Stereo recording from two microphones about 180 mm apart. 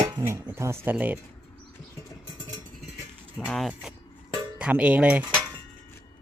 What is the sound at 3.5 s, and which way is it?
Speech, centre (ahead or behind).